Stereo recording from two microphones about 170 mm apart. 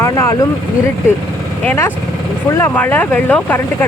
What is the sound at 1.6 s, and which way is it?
Speech, 15° left (ahead or behind).